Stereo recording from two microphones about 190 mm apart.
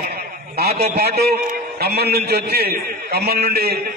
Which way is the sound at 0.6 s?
55° right (ahead or behind).